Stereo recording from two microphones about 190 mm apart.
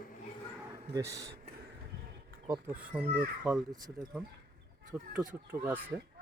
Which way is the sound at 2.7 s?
10° right (ahead or behind).